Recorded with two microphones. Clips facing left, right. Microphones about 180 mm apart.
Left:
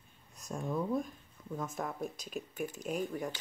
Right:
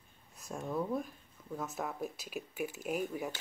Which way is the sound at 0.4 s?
5° right (ahead or behind).